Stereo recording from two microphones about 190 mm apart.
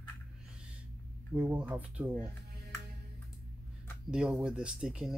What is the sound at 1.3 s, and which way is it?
Speech, 10° right (ahead or behind).